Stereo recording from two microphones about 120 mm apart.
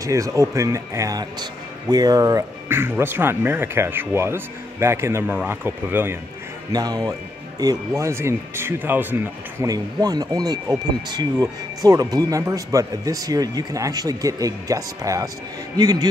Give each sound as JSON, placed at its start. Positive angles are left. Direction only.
{"t": 0.0, "sound": "speech", "side_deg": -25}
{"t": 6.7, "sound": "speech", "side_deg": -35}
{"t": 9.7, "sound": "speech", "side_deg": -30}